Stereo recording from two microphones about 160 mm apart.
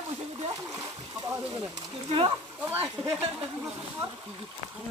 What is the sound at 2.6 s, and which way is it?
Speech, 15° right (ahead or behind).